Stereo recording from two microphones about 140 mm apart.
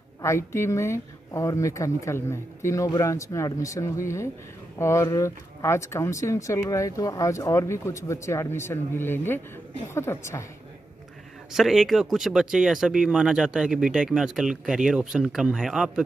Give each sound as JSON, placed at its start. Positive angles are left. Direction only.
{"t": 0.2, "sound": "speech", "side_deg": 20}
{"t": 11.5, "sound": "speech", "side_deg": 0}